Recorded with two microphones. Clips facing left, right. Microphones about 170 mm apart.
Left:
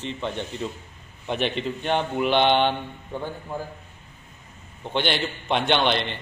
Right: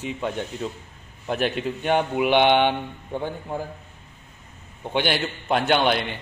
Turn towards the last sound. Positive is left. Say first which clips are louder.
# right 1 dB
turn(degrees=-5)  # may be behind; listen again after turning